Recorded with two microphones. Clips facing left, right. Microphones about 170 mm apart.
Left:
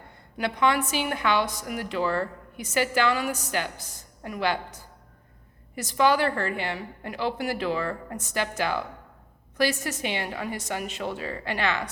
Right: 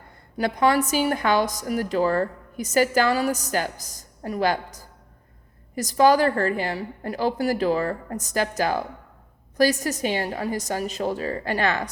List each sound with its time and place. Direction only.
0.3 s a woman's voice: 40° right (ahead or behind)